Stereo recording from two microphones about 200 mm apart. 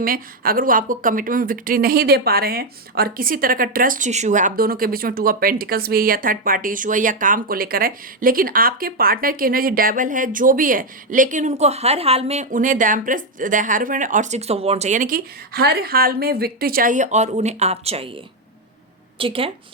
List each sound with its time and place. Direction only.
0.0 s a woman's voice: 45° right (ahead or behind); by 18.2 s 30° right (ahead or behind)
19.2 s speech: 25° right (ahead or behind)